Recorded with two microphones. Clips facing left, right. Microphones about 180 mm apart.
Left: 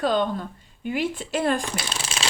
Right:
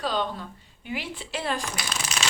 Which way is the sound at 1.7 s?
30° left (ahead or behind).